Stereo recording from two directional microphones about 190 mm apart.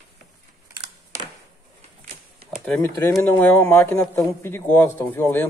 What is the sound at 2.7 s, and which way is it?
A man's voice, 5° left (ahead or behind).